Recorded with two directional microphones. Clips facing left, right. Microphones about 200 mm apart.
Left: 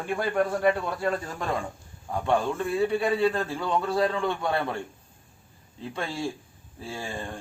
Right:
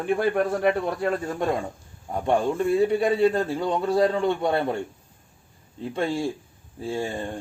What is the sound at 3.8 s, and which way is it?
Speech, 30° right (ahead or behind).